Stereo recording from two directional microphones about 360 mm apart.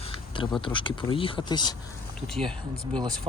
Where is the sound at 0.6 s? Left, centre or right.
Centre.